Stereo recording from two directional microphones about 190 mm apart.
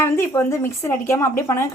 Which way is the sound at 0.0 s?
15° left (ahead or behind).